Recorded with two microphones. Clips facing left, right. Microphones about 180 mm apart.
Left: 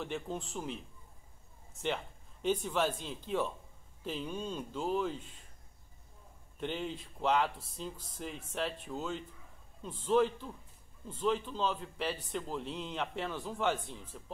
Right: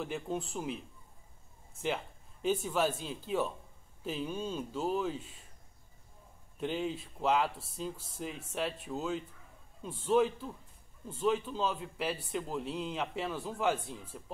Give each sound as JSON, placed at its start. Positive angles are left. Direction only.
{"t": 0.0, "sound": "speech", "side_deg": -5}
{"t": 2.4, "sound": "speech", "side_deg": -5}
{"t": 6.6, "sound": "speech", "side_deg": -5}